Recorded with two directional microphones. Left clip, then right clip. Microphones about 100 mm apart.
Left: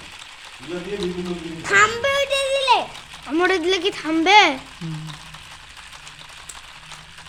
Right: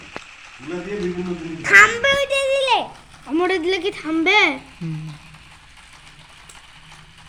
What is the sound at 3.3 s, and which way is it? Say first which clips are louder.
Speech: left 1 dB; 70° left (ahead or behind).